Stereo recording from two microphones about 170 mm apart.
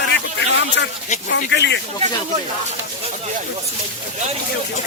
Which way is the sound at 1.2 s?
90° left.